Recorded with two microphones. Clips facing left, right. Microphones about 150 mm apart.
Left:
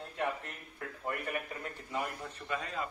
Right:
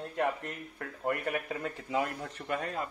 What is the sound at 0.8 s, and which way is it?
Speech, 75° right (ahead or behind).